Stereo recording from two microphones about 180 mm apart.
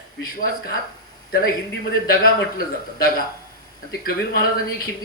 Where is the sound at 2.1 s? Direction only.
55° left (ahead or behind).